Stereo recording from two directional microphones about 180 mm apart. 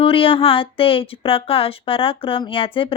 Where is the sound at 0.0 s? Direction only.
30° left (ahead or behind).